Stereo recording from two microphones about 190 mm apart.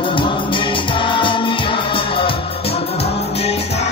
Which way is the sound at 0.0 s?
25° left (ahead or behind).